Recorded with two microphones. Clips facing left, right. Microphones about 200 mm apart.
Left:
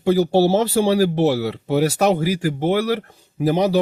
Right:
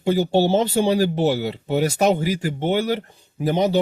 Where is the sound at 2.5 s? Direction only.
Centre (ahead or behind).